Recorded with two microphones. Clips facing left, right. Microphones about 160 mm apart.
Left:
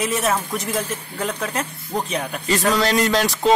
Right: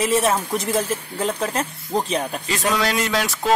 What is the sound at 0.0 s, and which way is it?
Speech, 30° right (ahead or behind).